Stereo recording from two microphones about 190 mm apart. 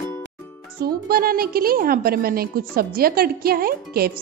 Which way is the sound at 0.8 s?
50° right (ahead or behind).